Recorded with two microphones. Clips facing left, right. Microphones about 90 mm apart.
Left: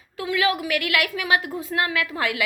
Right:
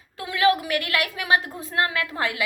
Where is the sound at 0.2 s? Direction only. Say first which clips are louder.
Right 2 dB; 30° right (ahead or behind).